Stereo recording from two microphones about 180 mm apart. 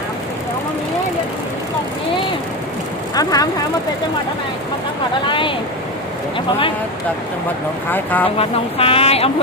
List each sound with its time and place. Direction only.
3.2 s speech: 20° left (ahead or behind)
5.3 s speech: 30° left (ahead or behind)
7.9 s speech: 10° left (ahead or behind)
8.4 s speech: 30° left (ahead or behind)